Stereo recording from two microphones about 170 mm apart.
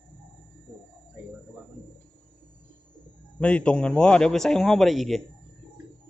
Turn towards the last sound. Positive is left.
turn(degrees=0)  # may be behind; listen again after turning